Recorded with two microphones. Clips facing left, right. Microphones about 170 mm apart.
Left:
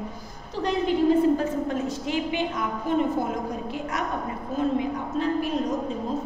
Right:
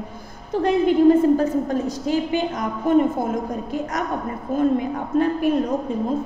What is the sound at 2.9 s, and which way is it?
Speech, 50° right (ahead or behind).